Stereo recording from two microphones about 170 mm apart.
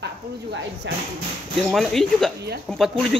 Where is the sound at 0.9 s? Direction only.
90° right.